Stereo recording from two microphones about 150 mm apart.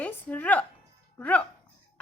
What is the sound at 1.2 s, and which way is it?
Speech, 10° left (ahead or behind).